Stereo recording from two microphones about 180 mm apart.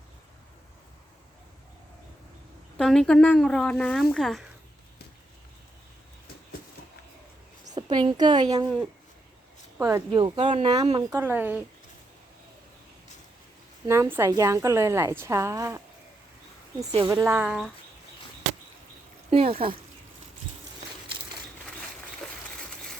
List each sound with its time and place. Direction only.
2.7 s speech: 5° left (ahead or behind)
7.7 s a woman's voice: 25° right (ahead or behind)
9.7 s speech: 15° right (ahead or behind)
10.1 s speech: 30° right (ahead or behind)
11.1 s a woman's voice: 15° right (ahead or behind)
13.8 s a woman's voice: 15° right (ahead or behind)
16.8 s a woman's voice: 25° right (ahead or behind); by 17.7 s 5° right (ahead or behind)
19.3 s speech: 35° right (ahead or behind)